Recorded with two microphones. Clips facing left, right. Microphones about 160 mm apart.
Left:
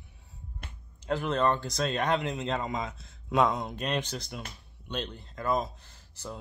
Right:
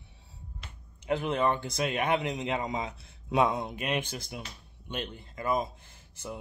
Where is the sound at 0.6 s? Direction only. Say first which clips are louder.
Left 3 dB; 55° left (ahead or behind).